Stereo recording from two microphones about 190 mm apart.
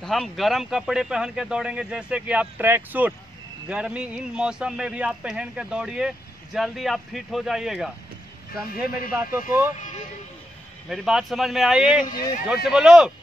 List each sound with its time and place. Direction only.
0.0 s a man's voice: centre (ahead or behind)
9.1 s a man's voice: 10° right (ahead or behind)
9.8 s speech: 40° left (ahead or behind)
10.9 s a man's voice: centre (ahead or behind)
12.1 s speech: 20° left (ahead or behind)
12.6 s a man's voice: 5° right (ahead or behind)